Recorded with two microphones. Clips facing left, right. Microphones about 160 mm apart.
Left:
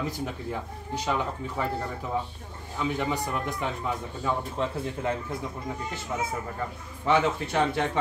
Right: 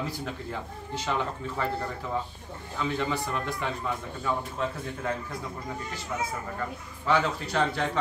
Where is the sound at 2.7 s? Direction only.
15° left (ahead or behind).